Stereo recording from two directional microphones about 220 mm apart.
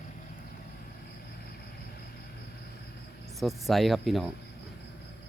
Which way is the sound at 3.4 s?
Centre (ahead or behind).